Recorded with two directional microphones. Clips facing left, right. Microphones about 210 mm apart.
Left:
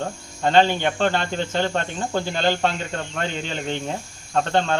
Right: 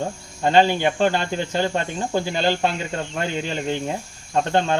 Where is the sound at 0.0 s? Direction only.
10° right (ahead or behind).